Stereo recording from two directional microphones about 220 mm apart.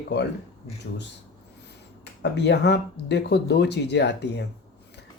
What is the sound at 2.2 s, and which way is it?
Speech, 50° left (ahead or behind).